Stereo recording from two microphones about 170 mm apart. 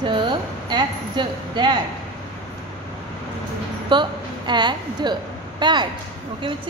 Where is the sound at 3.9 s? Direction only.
25° right (ahead or behind).